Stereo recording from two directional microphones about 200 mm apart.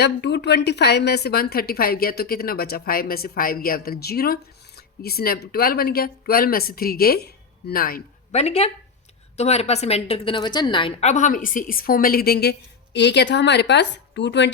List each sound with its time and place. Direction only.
0.0 s a woman's voice: 55° left (ahead or behind)
8.3 s a woman's voice: 30° left (ahead or behind); by 14.5 s 60° left (ahead or behind)